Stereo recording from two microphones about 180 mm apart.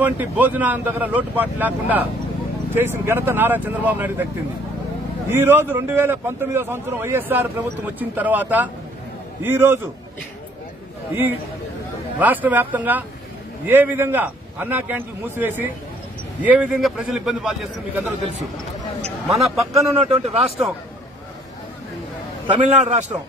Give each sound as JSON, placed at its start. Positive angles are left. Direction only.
{"t": 0.0, "sound": "a man's voice", "side_deg": -10}
{"t": 5.3, "sound": "a man's voice", "side_deg": -10}
{"t": 12.2, "sound": "a man's voice", "side_deg": -10}
{"t": 19.2, "sound": "speech", "side_deg": 0}
{"t": 20.0, "sound": "a man's voice", "side_deg": -35}
{"t": 22.5, "sound": "a man's voice", "side_deg": -40}